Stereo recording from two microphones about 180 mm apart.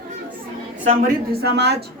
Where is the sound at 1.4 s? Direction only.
70° right (ahead or behind).